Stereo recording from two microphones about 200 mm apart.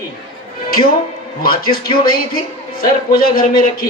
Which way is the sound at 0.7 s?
50° left (ahead or behind).